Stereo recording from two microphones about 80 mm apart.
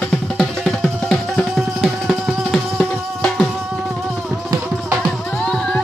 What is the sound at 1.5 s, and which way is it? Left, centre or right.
Music, centre.